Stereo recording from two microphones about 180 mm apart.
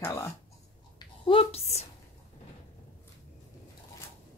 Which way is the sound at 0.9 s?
30° left (ahead or behind).